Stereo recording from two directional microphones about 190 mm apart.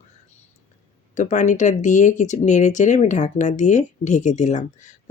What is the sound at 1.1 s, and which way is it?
Speech, 40° left (ahead or behind).